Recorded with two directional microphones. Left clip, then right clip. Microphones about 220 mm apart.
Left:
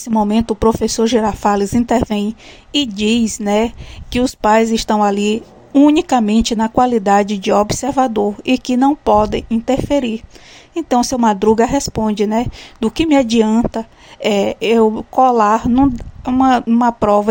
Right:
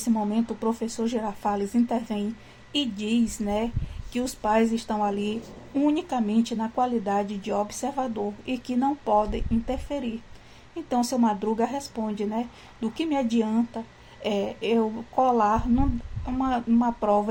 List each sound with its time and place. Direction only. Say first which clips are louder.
0.0 s speech: left 11 dB; 45° left (ahead or behind)